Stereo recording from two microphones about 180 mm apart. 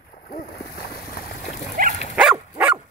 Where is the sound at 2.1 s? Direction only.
5° right (ahead or behind).